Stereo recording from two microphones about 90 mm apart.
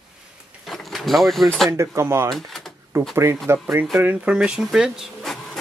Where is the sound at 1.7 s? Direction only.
30° right (ahead or behind).